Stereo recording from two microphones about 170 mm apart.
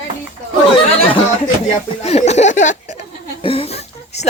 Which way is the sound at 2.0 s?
40° left (ahead or behind).